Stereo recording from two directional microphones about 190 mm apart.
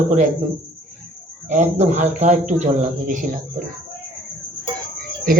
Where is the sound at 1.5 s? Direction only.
35° right (ahead or behind).